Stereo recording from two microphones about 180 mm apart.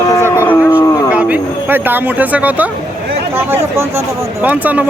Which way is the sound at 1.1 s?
10° right (ahead or behind).